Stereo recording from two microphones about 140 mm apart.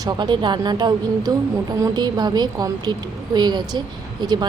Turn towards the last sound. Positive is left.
turn(degrees=-30)  # may be behind; listen again after turning